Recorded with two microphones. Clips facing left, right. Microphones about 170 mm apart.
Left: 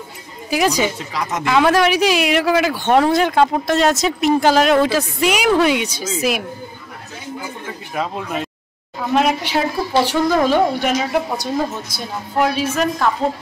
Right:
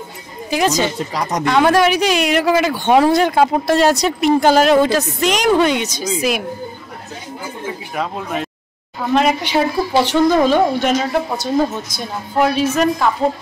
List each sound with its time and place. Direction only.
0.5 s speech: 10° left (ahead or behind)
1.1 s speech: 40° right (ahead or behind)
1.4 s speech: centre (ahead or behind)
7.9 s speech: centre (ahead or behind)